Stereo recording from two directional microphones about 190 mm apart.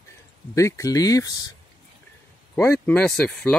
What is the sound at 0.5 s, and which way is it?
Speech, 15° left (ahead or behind).